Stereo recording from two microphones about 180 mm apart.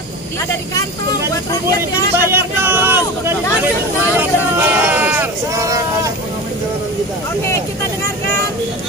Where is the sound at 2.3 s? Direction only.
10° right (ahead or behind).